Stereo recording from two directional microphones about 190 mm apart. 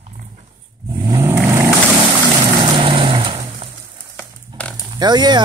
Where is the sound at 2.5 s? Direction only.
25° right (ahead or behind).